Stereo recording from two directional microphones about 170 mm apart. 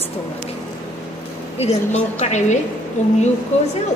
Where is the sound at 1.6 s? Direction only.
40° left (ahead or behind).